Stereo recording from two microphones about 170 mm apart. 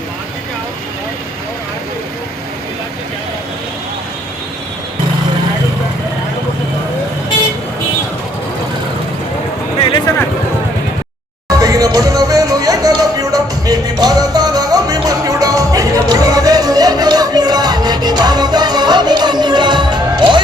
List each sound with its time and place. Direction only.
11.4 s music: 20° right (ahead or behind)